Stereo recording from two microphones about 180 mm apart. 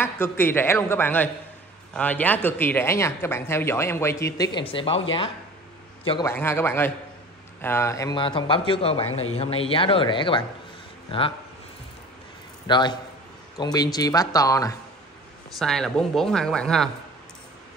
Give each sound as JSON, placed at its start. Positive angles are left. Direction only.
{"t": 0.0, "sound": "speech", "side_deg": 10}
{"t": 6.2, "sound": "speech", "side_deg": 15}
{"t": 12.6, "sound": "a man's voice", "side_deg": 25}
{"t": 15.6, "sound": "speech", "side_deg": 5}